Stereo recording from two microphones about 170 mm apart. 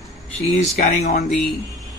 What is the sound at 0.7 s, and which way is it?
Speech, 40° left (ahead or behind).